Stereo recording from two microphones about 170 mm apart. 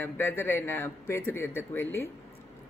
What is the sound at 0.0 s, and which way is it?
A man's voice, 15° left (ahead or behind).